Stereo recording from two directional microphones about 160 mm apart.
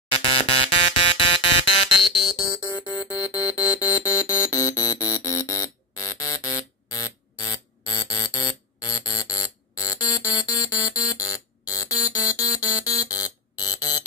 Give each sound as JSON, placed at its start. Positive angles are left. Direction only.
{"t": 0.1, "sound": "music", "side_deg": 35}